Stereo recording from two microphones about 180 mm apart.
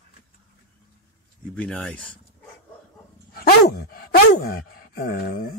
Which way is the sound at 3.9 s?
60° left (ahead or behind).